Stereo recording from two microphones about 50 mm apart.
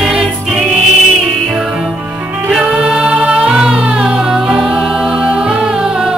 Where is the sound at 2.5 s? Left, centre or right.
Centre.